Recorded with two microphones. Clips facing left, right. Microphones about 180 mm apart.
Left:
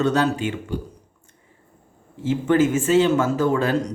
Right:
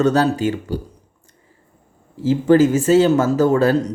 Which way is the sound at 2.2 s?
35° right (ahead or behind).